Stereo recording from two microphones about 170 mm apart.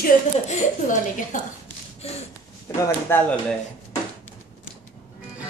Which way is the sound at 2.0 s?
35° left (ahead or behind).